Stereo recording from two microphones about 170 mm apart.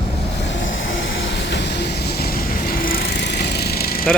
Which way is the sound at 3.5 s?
70° left (ahead or behind).